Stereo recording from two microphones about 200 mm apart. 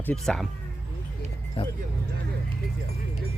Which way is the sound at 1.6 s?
30° left (ahead or behind).